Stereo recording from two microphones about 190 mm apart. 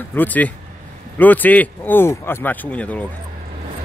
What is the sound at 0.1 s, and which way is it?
Speech, 10° left (ahead or behind).